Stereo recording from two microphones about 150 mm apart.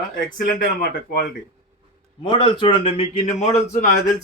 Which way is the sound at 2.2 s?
35° left (ahead or behind).